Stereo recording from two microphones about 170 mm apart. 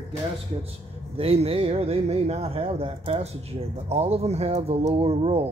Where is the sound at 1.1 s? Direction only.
35° right (ahead or behind).